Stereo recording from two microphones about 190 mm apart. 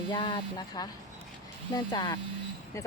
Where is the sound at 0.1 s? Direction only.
25° left (ahead or behind).